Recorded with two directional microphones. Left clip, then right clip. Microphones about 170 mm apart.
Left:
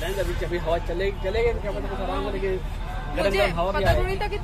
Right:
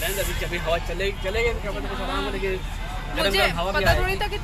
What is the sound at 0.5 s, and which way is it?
Speech, 30° left (ahead or behind).